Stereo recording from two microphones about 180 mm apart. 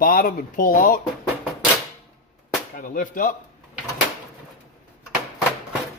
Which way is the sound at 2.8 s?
50° left (ahead or behind).